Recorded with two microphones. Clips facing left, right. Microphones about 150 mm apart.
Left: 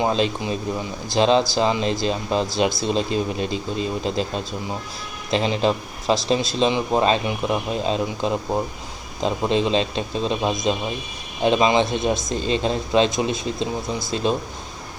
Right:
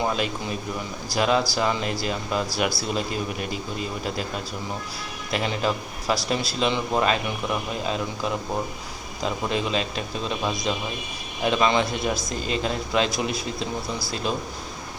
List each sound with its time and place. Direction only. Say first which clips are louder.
0.0 s speech: left 5 dB; 20° left (ahead or behind)